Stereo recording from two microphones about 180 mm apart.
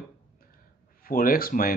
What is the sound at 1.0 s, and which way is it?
Speech, 50° left (ahead or behind).